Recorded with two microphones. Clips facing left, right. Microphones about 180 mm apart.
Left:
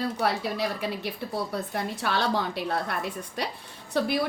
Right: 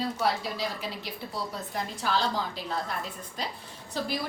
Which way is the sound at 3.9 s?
60° left (ahead or behind).